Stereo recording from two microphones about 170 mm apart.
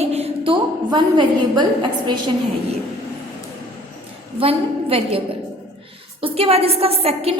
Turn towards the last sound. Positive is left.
turn(degrees=-35)  # may be behind; listen again after turning